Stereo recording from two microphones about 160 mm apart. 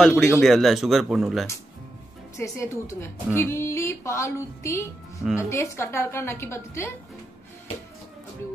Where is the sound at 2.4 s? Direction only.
15° left (ahead or behind).